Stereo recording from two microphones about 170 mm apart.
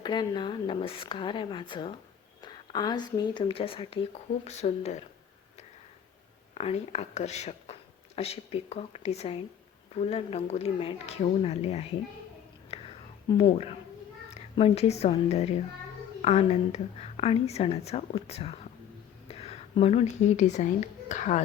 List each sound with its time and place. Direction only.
0.0 s a woman's voice: 25° left (ahead or behind)
6.5 s a woman's voice: 40° left (ahead or behind)
12.7 s whispering: 35° left (ahead or behind)
14.5 s a woman's voice: 35° left (ahead or behind)